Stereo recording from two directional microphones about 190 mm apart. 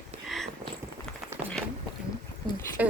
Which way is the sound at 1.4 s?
30° right (ahead or behind).